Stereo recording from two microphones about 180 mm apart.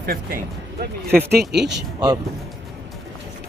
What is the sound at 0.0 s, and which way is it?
Speech, 60° right (ahead or behind).